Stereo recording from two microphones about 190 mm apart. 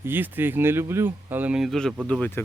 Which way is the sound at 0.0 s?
10° right (ahead or behind).